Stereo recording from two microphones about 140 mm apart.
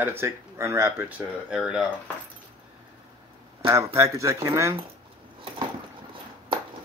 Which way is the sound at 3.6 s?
20° right (ahead or behind).